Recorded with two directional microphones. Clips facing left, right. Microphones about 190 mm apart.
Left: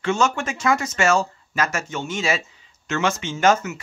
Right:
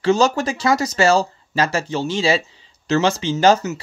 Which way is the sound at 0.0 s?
35° right (ahead or behind).